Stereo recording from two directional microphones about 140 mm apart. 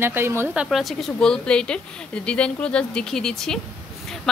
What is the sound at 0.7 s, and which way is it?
Speech, 5° left (ahead or behind).